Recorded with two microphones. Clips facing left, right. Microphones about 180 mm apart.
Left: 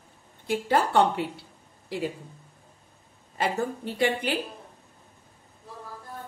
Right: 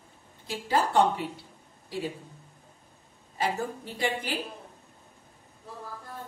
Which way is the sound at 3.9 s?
60° left (ahead or behind).